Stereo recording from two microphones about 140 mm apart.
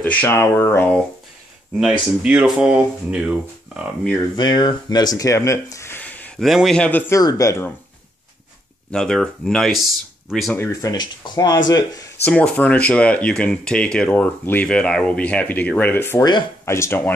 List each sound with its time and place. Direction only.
0.0 s speech: 10° left (ahead or behind)
1.8 s speech: 5° right (ahead or behind)
4.4 s speech: 30° left (ahead or behind); by 6.4 s 10° left (ahead or behind)
6.4 s speech: centre (ahead or behind)
7.2 s speech: 25° left (ahead or behind)
8.9 s speech: 5° left (ahead or behind)
10.6 s speech: 25° left (ahead or behind)
12.3 s speech: 10° left (ahead or behind)